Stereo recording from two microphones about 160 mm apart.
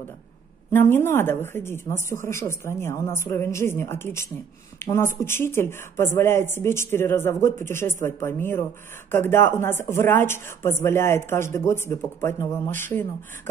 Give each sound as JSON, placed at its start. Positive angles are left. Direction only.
{"t": 0.7, "sound": "speech", "side_deg": 15}